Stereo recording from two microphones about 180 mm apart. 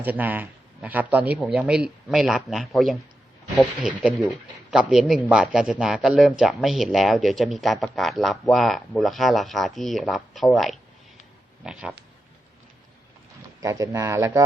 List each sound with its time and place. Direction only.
0.0 s speech: 10° right (ahead or behind)
13.6 s speech: 20° right (ahead or behind)